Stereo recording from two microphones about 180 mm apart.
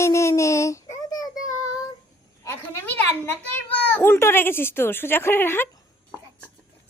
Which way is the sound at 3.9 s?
15° left (ahead or behind).